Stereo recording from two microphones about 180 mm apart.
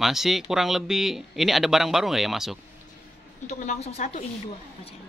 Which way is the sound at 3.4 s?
40° left (ahead or behind).